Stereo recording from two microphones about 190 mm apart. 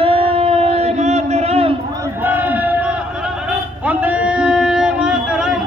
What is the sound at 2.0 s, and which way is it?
Crowd, 10° right (ahead or behind).